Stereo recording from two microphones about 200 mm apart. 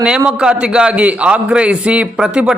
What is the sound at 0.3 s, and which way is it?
A man's voice, 5° right (ahead or behind).